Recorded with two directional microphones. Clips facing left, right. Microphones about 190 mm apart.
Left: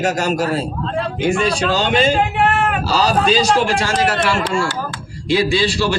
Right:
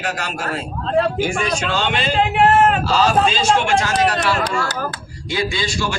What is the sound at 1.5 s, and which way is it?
A man's voice, 40° left (ahead or behind).